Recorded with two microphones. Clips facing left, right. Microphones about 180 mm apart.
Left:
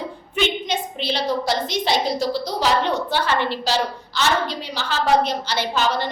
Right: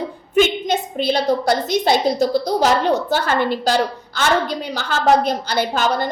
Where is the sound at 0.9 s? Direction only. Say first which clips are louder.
Right 6 dB; 50° right (ahead or behind).